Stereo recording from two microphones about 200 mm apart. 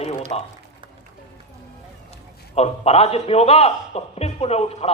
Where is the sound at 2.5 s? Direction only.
30° left (ahead or behind).